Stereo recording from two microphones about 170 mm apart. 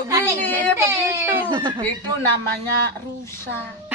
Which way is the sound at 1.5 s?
30° right (ahead or behind).